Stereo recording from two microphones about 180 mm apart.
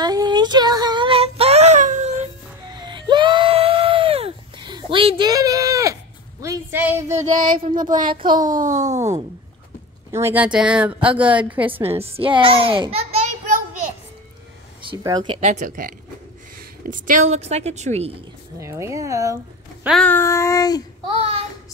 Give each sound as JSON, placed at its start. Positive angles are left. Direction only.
{"t": 0.0, "sound": "child singing", "side_deg": -20}
{"t": 2.7, "sound": "screaming", "side_deg": -25}
{"t": 6.4, "sound": "a sound", "side_deg": -15}
{"t": 7.1, "sound": "child singing", "side_deg": -40}
{"t": 8.1, "sound": "speech", "side_deg": -25}
{"t": 8.5, "sound": "a woman's voice", "side_deg": -40}
{"t": 10.1, "sound": "a woman's voice", "side_deg": -10}
{"t": 12.0, "sound": "a woman's voice", "side_deg": -30}
{"t": 14.8, "sound": "a woman's voice", "side_deg": -25}
{"t": 18.6, "sound": "speech", "side_deg": -15}
{"t": 20.0, "sound": "a sound", "side_deg": 10}
{"t": 21.1, "sound": "child singing", "side_deg": -30}